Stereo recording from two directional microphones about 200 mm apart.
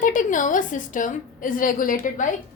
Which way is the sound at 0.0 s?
40° left (ahead or behind).